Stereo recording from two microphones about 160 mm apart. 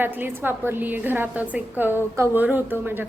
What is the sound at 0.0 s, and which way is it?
A woman's voice, 15° right (ahead or behind).